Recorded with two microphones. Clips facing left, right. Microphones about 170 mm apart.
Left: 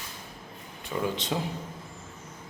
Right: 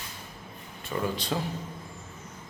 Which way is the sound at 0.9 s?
20° left (ahead or behind).